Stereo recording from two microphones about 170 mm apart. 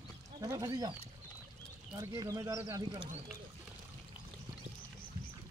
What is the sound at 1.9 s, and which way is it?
Speech, 20° right (ahead or behind).